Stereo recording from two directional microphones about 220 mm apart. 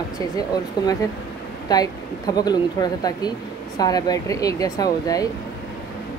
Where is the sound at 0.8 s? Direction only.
20° left (ahead or behind).